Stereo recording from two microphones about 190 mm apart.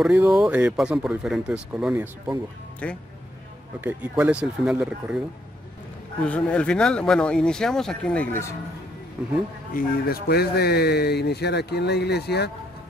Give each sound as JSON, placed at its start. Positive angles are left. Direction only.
{"t": 0.0, "sound": "speech", "side_deg": -5}
{"t": 2.8, "sound": "speech", "side_deg": 5}
{"t": 3.8, "sound": "speech", "side_deg": -10}
{"t": 6.2, "sound": "speech", "side_deg": 5}
{"t": 9.2, "sound": "speech", "side_deg": -5}
{"t": 9.8, "sound": "speech", "side_deg": 50}